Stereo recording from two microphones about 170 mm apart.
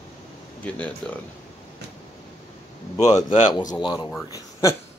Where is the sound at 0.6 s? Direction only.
10° left (ahead or behind).